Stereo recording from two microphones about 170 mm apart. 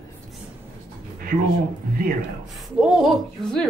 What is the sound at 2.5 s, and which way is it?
A woman's voice, centre (ahead or behind).